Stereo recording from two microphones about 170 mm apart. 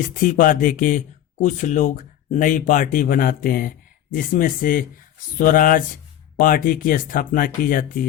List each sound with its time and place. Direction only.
0.0 s speech: 50° left (ahead or behind)